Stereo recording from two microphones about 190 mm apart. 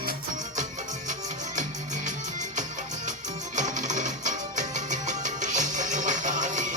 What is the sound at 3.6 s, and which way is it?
Music, 40° right (ahead or behind).